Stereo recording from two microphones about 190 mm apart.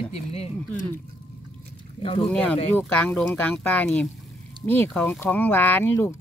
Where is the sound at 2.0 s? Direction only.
30° left (ahead or behind).